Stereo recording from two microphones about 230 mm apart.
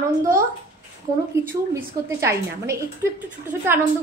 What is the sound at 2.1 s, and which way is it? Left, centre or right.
A woman's voice, centre.